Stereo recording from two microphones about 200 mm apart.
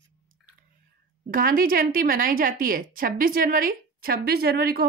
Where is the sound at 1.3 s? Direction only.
45° right (ahead or behind).